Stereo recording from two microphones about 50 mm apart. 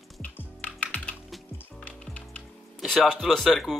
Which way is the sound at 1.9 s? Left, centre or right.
Left.